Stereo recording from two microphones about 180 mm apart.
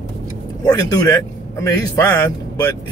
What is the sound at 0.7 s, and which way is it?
Speech, 20° left (ahead or behind).